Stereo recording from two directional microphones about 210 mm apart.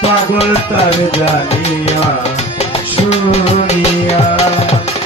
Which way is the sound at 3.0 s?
30° left (ahead or behind).